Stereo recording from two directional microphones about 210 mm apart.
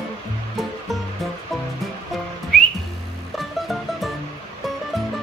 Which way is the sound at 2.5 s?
5° left (ahead or behind).